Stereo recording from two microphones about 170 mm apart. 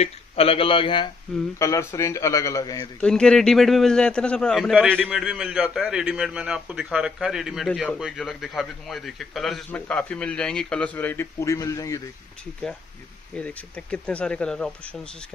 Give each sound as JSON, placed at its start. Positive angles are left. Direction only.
{"t": 0.0, "sound": "a man's voice", "side_deg": 35}
{"t": 1.6, "sound": "a man's voice", "side_deg": 20}
{"t": 3.0, "sound": "a man's voice", "side_deg": 5}
{"t": 13.3, "sound": "speech", "side_deg": 10}